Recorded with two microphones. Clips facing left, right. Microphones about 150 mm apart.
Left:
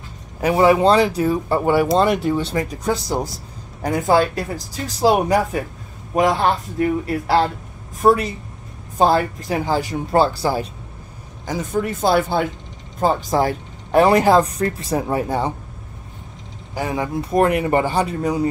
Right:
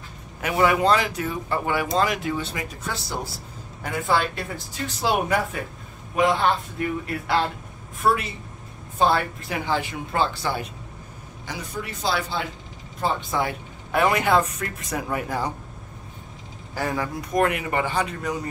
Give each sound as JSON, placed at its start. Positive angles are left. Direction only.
{"t": 0.4, "sound": "speech", "side_deg": 35}
{"t": 2.0, "sound": "speech", "side_deg": 0}
{"t": 2.5, "sound": "speech", "side_deg": 40}
{"t": 11.4, "sound": "speech", "side_deg": 45}
{"t": 13.0, "sound": "speech", "side_deg": 40}
{"t": 16.7, "sound": "speech", "side_deg": 20}